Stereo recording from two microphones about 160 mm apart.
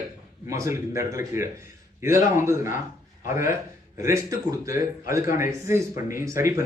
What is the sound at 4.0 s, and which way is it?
A man's voice, 20° right (ahead or behind).